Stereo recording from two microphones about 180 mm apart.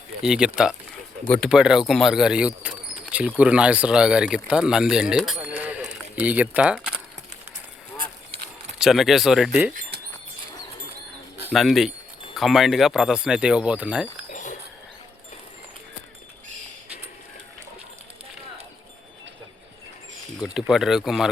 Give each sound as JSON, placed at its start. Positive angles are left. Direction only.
{"t": 0.3, "sound": "speech", "side_deg": -5}
{"t": 8.8, "sound": "speech", "side_deg": 0}
{"t": 11.5, "sound": "speech", "side_deg": 0}
{"t": 14.3, "sound": "a sound", "side_deg": 45}
{"t": 20.4, "sound": "speech", "side_deg": -5}